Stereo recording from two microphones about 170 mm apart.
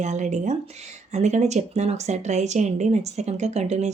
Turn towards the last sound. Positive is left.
turn(degrees=-40)  # may be behind; listen again after turning